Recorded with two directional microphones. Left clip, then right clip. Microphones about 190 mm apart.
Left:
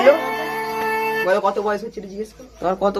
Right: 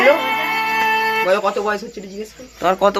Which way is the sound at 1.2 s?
35° right (ahead or behind).